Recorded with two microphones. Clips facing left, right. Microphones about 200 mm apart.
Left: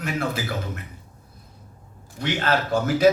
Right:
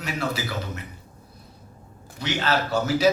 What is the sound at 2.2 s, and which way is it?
Speech, 50° left (ahead or behind).